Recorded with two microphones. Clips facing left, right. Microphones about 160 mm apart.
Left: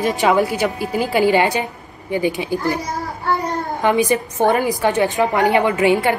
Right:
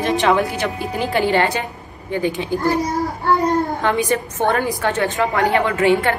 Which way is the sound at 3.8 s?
15° left (ahead or behind).